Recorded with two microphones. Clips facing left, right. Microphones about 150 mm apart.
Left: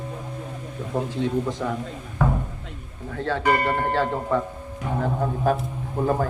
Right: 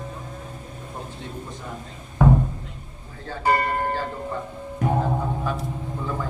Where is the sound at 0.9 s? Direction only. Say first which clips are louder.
Left 13 dB; 90° left.